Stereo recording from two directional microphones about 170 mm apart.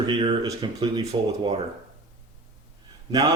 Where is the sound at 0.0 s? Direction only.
35° right (ahead or behind).